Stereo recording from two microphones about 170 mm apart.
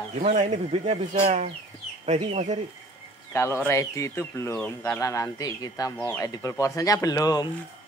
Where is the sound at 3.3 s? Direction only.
15° left (ahead or behind).